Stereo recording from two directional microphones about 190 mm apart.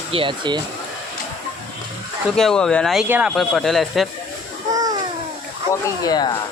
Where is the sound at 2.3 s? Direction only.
5° left (ahead or behind).